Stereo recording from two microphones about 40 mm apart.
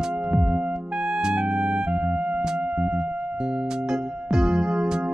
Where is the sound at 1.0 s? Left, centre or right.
Right.